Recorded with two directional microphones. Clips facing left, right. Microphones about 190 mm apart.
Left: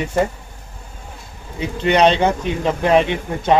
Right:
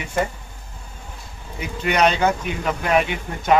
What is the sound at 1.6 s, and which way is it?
Speech, 30° left (ahead or behind).